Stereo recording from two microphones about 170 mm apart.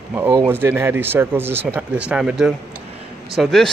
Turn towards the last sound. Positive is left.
turn(degrees=0)  # may be behind; listen again after turning